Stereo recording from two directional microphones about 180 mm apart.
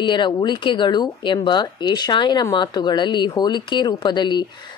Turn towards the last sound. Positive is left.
turn(degrees=25)  # may be behind; listen again after turning